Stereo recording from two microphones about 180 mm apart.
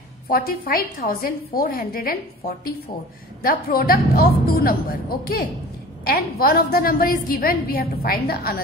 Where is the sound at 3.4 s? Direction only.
55° left (ahead or behind).